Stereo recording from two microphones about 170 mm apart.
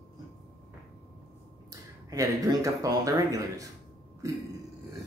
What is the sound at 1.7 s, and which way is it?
Speech, 20° right (ahead or behind).